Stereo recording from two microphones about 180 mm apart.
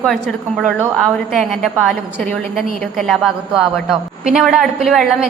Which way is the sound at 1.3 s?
Centre (ahead or behind).